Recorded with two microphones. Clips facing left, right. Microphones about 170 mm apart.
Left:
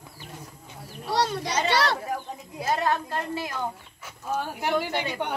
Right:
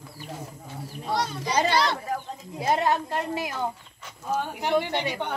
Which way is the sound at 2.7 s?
20° right (ahead or behind).